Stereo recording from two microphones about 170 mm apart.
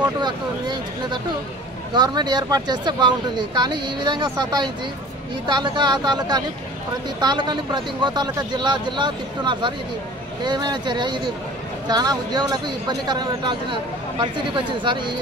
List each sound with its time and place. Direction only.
0.2 s speech: 25° right (ahead or behind)